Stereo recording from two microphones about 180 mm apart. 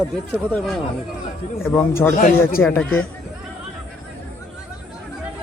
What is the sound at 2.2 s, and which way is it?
Speech, 50° left (ahead or behind).